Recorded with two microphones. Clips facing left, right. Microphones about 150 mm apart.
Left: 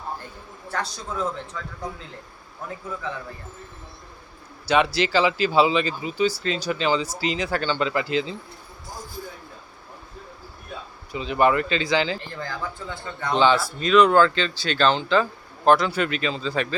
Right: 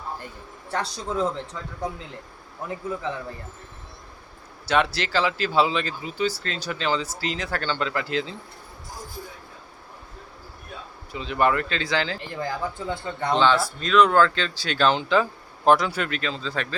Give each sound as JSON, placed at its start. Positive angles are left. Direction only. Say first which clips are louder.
{"t": 0.7, "sound": "a man's voice", "louder": "right 2 dB", "side_deg": -25}
{"t": 4.7, "sound": "speech", "louder": "left 3 dB", "side_deg": 0}
{"t": 11.1, "sound": "speech", "louder": "left 2 dB", "side_deg": 5}
{"t": 12.3, "sound": "speech", "louder": "right 3 dB", "side_deg": -20}
{"t": 13.3, "sound": "speech", "louder": "left 1 dB", "side_deg": 5}
{"t": 15.9, "sound": "speech", "louder": "left 3 dB", "side_deg": 0}